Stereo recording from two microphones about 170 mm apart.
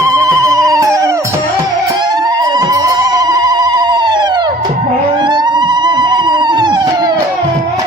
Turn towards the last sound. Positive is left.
turn(degrees=-25)  # may be behind; listen again after turning